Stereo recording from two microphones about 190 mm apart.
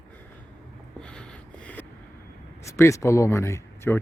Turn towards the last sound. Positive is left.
turn(degrees=15)  # may be behind; listen again after turning